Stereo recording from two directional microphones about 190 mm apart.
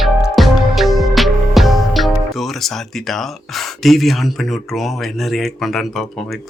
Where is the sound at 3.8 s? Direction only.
Centre (ahead or behind).